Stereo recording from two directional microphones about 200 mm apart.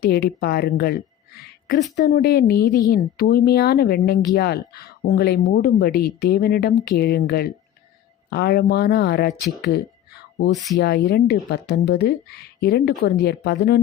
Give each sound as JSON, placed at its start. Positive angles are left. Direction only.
{"t": 0.0, "sound": "speech", "side_deg": 50}
{"t": 2.0, "sound": "speech", "side_deg": 55}